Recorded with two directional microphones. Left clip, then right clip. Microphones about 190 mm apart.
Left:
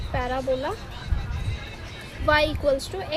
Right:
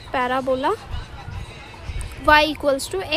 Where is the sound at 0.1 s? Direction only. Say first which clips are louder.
Right 5 dB; 35° right (ahead or behind).